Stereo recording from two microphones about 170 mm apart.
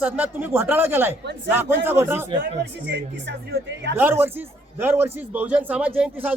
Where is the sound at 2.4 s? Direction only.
85° right.